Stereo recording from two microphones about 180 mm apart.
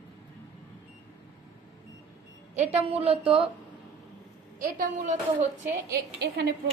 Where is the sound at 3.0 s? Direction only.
30° right (ahead or behind).